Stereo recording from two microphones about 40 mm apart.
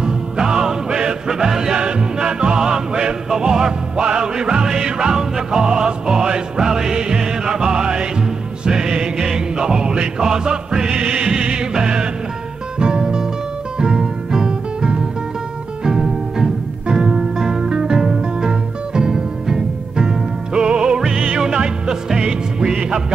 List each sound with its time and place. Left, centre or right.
0.0 s music: centre